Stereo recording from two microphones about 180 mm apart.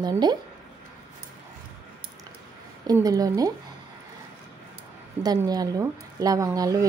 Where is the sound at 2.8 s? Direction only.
20° right (ahead or behind).